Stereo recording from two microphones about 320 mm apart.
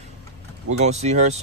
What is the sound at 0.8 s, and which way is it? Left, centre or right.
Speech, centre.